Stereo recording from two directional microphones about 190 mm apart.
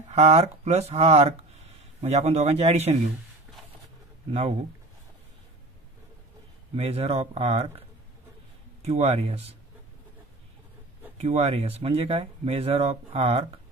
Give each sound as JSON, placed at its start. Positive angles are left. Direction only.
{"t": 0.1, "sound": "speech", "side_deg": -35}
{"t": 4.3, "sound": "speech", "side_deg": -30}
{"t": 6.7, "sound": "speech", "side_deg": -30}
{"t": 8.8, "sound": "speech", "side_deg": -35}
{"t": 11.1, "sound": "speech", "side_deg": -35}